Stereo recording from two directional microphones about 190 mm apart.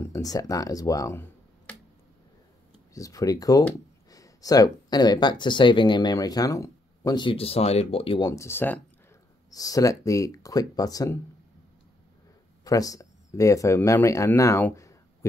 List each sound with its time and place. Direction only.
0.0 s speech: 20° left (ahead or behind)
2.9 s speech: 15° left (ahead or behind)
8.3 s speech: 15° left (ahead or behind)
12.6 s speech: 20° left (ahead or behind)